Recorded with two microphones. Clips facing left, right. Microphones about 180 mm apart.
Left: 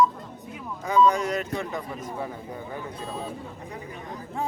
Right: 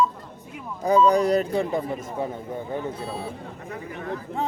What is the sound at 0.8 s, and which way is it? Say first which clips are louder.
A man's voice: right 3 dB; 35° right (ahead or behind).